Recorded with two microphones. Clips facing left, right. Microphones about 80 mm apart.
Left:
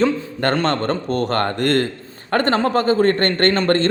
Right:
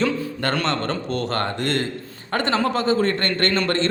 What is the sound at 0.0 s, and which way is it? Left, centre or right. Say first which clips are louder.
A man's voice: left 4 dB; left.